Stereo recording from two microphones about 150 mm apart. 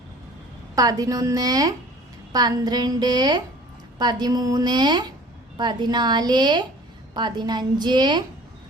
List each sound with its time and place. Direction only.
0.8 s a woman's voice: 25° right (ahead or behind)